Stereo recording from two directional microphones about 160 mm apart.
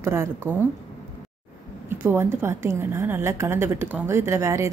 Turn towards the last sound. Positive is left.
turn(degrees=-15)  # may be behind; listen again after turning